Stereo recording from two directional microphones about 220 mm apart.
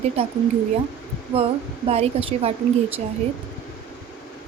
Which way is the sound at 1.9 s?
30° right (ahead or behind).